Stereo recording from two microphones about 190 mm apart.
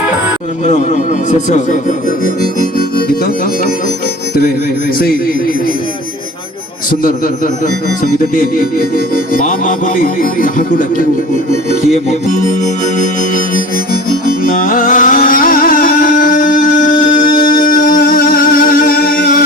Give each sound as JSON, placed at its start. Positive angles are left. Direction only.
{"t": 0.6, "sound": "speech", "side_deg": 40}
{"t": 9.3, "sound": "music", "side_deg": 45}
{"t": 13.9, "sound": "music", "side_deg": 50}